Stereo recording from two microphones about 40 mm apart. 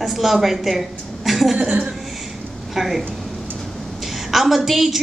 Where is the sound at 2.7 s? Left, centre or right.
Centre.